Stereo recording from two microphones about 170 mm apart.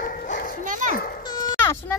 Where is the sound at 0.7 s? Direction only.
50° right (ahead or behind).